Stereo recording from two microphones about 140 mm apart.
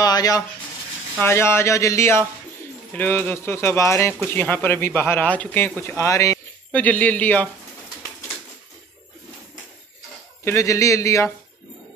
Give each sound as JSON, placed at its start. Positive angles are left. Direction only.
{"t": 0.0, "sound": "a sound", "side_deg": 25}
{"t": 1.2, "sound": "speech", "side_deg": 20}
{"t": 6.8, "sound": "speech", "side_deg": 10}
{"t": 10.4, "sound": "speech", "side_deg": 20}